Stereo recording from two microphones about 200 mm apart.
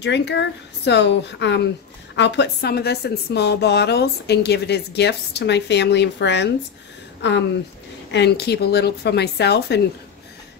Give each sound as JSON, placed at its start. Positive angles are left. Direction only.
{"t": 0.0, "sound": "a woman's voice", "side_deg": 60}